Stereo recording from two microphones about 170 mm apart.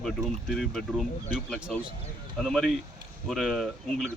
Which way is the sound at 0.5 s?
Centre (ahead or behind).